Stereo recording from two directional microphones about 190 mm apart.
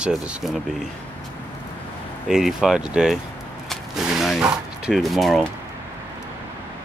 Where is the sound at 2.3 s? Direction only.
5° right (ahead or behind).